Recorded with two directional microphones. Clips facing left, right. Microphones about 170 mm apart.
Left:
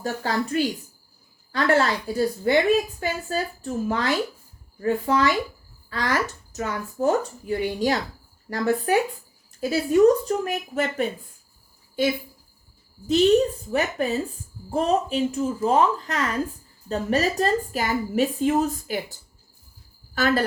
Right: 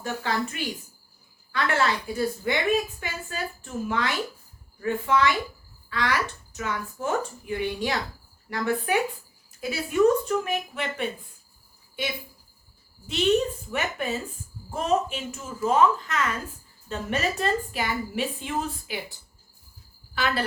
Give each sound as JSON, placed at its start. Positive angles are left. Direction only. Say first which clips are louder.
{"t": 0.0, "sound": "a woman's voice", "louder": "left 2 dB", "side_deg": 40}
{"t": 13.1, "sound": "a woman's voice", "louder": "left 5 dB", "side_deg": 35}
{"t": 20.1, "sound": "speech", "louder": "left 6 dB", "side_deg": 45}